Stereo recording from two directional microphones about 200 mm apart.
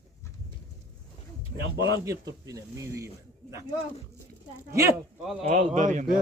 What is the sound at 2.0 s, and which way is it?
A man's voice, 15° right (ahead or behind).